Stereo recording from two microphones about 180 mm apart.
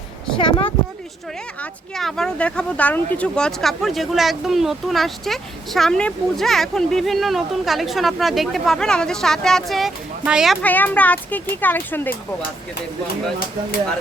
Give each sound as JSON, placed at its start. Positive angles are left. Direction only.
{"t": 0.3, "sound": "speech", "side_deg": 30}
{"t": 2.0, "sound": "speech", "side_deg": 0}
{"t": 10.6, "sound": "speech", "side_deg": 10}